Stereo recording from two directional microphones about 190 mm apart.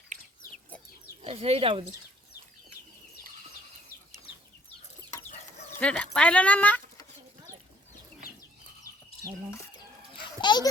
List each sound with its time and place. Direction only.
1.2 s speech: 30° right (ahead or behind)
5.8 s speech: 5° left (ahead or behind)
10.4 s a sound: 25° left (ahead or behind)